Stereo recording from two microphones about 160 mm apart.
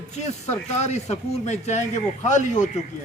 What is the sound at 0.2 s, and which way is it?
Speech, 45° left (ahead or behind).